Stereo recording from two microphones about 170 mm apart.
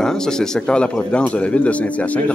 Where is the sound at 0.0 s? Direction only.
5° left (ahead or behind).